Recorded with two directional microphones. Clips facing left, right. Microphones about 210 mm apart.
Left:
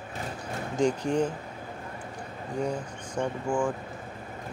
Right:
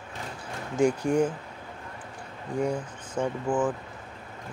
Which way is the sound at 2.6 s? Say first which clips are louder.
Right 2 dB; 5° right (ahead or behind).